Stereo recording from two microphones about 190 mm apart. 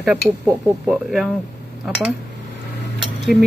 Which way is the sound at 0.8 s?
Centre (ahead or behind).